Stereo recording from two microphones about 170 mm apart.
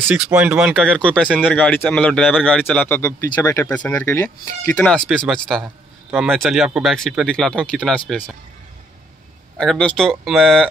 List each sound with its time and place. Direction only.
0.3 s speech: 10° right (ahead or behind); by 4.3 s 15° left (ahead or behind)
4.7 s speech: 5° left (ahead or behind)
9.6 s speech: 5° left (ahead or behind)